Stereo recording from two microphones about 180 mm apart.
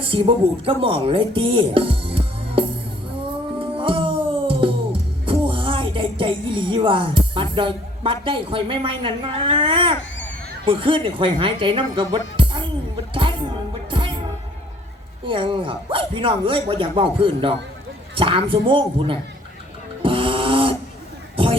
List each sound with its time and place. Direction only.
0.0 s speech: 30° right (ahead or behind)
3.6 s music: 30° right (ahead or behind)
10.7 s speech: 30° right (ahead or behind)
13.1 s music: 30° right (ahead or behind)
15.3 s speech: 30° right (ahead or behind)
20.0 s a sound: 30° right (ahead or behind)